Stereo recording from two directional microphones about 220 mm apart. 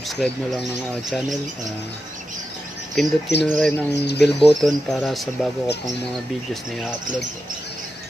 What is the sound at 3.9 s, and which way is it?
Speech, 50° left (ahead or behind).